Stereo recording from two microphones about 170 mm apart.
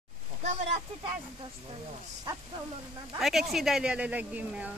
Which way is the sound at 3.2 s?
Centre (ahead or behind).